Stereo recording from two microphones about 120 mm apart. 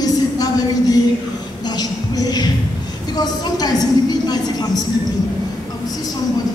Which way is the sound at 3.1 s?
35° left (ahead or behind).